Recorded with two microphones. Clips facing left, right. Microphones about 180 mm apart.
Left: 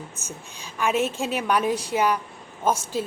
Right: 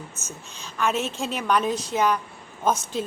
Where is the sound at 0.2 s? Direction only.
10° left (ahead or behind).